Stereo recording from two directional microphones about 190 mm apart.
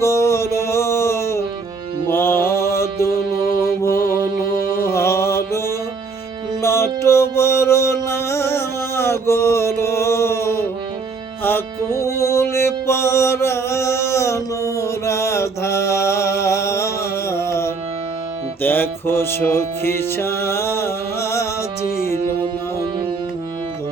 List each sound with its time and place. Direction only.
0.0 s music: 15° left (ahead or behind)
2.0 s mantra: 10° left (ahead or behind)
4.8 s mantra: 15° left (ahead or behind)
6.6 s music: 15° left (ahead or behind)
11.8 s music: 20° right (ahead or behind)
12.0 s music: 15° left (ahead or behind)
14.8 s mantra: 15° left (ahead or behind)
18.6 s music: 10° left (ahead or behind)